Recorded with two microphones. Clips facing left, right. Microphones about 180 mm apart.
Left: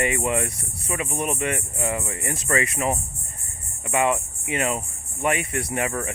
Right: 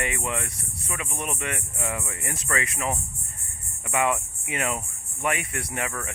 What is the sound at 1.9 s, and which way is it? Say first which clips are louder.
Speech: left 5 dB; 30° left (ahead or behind).